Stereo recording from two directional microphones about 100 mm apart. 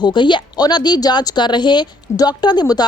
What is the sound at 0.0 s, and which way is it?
Speech, 50° left (ahead or behind).